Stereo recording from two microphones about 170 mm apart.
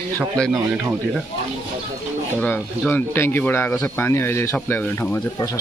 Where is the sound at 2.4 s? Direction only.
5° left (ahead or behind).